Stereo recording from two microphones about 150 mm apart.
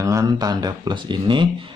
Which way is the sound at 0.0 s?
25° right (ahead or behind).